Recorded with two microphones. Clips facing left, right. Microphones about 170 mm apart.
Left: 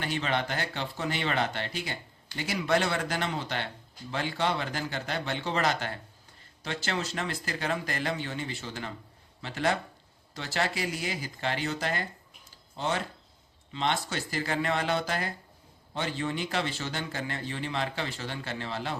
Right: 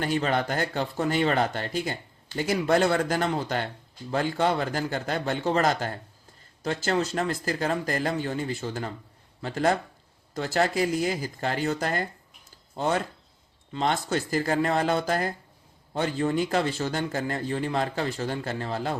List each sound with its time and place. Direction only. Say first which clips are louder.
0.0 s speech: right 5 dB; 45° right (ahead or behind)